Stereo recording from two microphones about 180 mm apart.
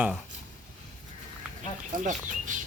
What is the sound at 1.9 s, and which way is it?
Speech, 45° right (ahead or behind).